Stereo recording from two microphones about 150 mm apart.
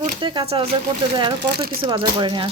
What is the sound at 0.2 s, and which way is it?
Speech, 35° right (ahead or behind).